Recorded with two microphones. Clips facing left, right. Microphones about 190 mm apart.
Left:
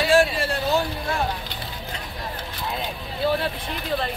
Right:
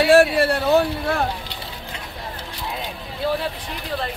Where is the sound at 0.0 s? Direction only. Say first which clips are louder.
Right 5 dB; 60° right (ahead or behind).